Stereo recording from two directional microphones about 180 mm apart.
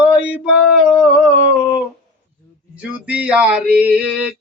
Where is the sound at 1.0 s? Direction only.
5° right (ahead or behind).